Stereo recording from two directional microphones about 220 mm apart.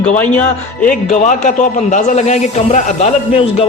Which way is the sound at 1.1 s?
35° left (ahead or behind).